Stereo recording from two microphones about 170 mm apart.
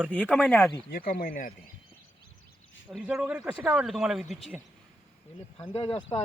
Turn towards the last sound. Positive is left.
turn(degrees=35)  # may be behind; listen again after turning